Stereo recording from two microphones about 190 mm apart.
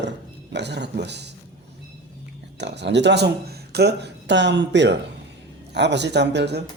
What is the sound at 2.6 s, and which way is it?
Speech, 65° right (ahead or behind).